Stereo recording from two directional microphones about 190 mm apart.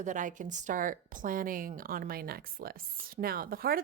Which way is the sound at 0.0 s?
40° right (ahead or behind).